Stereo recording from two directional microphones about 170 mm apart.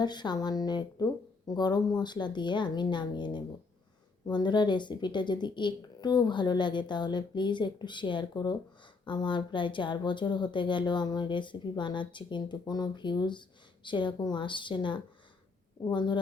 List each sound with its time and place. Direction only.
0.0 s speech: 25° left (ahead or behind)